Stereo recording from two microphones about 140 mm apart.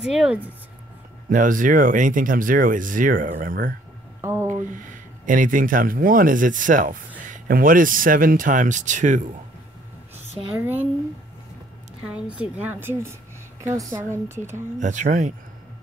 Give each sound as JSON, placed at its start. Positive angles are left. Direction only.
{"t": 0.1, "sound": "speech", "side_deg": -5}
{"t": 1.3, "sound": "speech", "side_deg": -70}
{"t": 4.2, "sound": "speech", "side_deg": -15}
{"t": 4.6, "sound": "speech", "side_deg": -70}
{"t": 7.2, "sound": "speech", "side_deg": -80}
{"t": 10.5, "sound": "speech", "side_deg": -15}
{"t": 12.1, "sound": "a woman's voice", "side_deg": -10}
{"t": 14.1, "sound": "speech", "side_deg": -20}
{"t": 14.8, "sound": "speech", "side_deg": -60}